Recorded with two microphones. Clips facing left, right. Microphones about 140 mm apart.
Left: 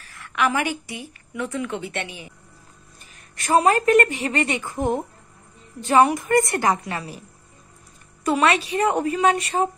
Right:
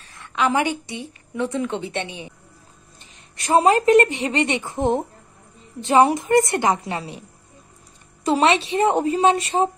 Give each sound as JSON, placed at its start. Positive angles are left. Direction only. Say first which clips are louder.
{"t": 0.0, "sound": "a woman's voice", "louder": "right 1 dB", "side_deg": -20}
{"t": 8.3, "sound": "a woman's voice", "louder": "right 2 dB", "side_deg": -25}